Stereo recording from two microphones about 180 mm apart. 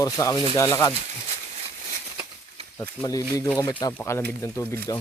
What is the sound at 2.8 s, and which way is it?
Speech, 15° left (ahead or behind).